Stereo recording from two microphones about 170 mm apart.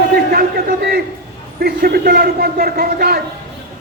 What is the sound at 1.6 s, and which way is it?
Speech, 65° right (ahead or behind).